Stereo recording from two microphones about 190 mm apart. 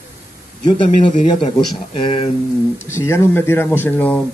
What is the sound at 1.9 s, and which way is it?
Speech, 30° left (ahead or behind).